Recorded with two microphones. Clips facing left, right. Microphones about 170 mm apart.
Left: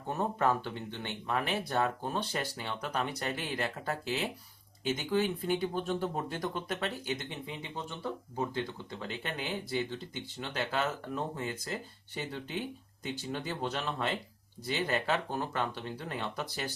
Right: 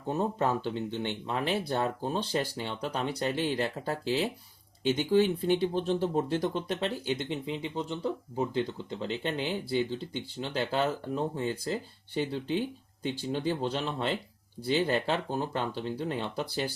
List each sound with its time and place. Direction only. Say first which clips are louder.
0.3 s speech: right 1 dB; 20° right (ahead or behind)
10.8 s speech: right 4 dB; 30° right (ahead or behind)